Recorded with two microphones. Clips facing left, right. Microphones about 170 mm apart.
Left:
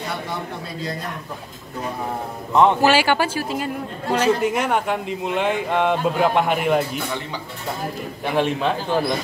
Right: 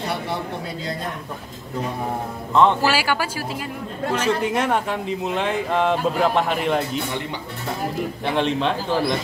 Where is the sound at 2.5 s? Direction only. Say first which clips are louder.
Left 2 dB; 20° left (ahead or behind).